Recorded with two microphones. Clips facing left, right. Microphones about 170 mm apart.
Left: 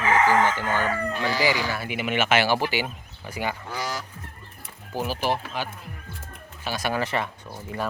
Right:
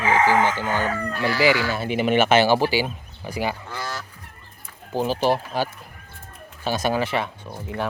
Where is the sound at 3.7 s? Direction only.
15° left (ahead or behind).